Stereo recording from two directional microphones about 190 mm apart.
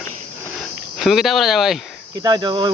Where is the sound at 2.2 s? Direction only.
20° right (ahead or behind).